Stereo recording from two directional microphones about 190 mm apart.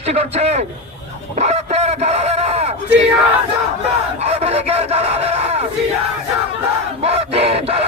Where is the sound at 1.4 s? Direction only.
35° right (ahead or behind).